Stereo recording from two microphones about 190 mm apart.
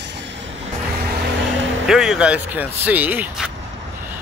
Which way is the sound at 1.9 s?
5° right (ahead or behind).